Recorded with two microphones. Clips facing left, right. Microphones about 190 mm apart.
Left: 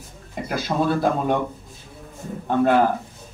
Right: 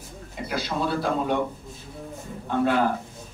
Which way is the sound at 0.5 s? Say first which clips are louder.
Left 5 dB; 50° left (ahead or behind).